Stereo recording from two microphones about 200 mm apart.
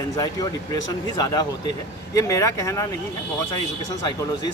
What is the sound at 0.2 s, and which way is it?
Speech, 20° left (ahead or behind).